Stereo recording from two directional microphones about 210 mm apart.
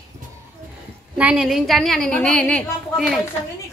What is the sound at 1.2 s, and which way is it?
A woman's voice, 5° right (ahead or behind).